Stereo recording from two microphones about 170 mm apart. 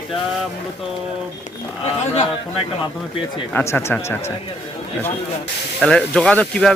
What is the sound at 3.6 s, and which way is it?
Speech, 15° left (ahead or behind).